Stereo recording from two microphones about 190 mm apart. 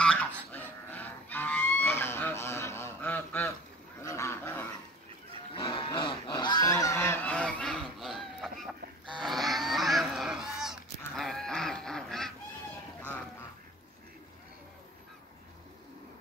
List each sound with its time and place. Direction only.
0.0 s goose: 5° left (ahead or behind)
5.5 s goose: 25° left (ahead or behind); by 12.3 s centre (ahead or behind)